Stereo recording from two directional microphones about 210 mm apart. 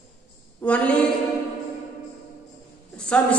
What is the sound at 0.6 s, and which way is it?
Speech, 5° left (ahead or behind).